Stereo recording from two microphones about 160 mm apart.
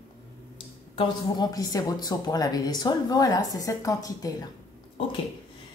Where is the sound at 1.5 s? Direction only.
20° left (ahead or behind).